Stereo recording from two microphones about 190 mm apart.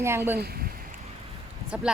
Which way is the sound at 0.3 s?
55° right (ahead or behind).